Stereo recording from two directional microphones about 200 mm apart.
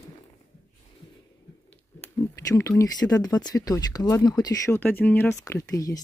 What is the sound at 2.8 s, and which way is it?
Speech, 20° left (ahead or behind).